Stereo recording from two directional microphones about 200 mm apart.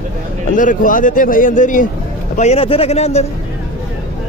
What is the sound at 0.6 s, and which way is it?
Speech, 40° left (ahead or behind).